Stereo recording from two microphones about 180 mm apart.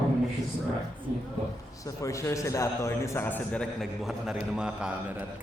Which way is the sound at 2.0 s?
15° left (ahead or behind).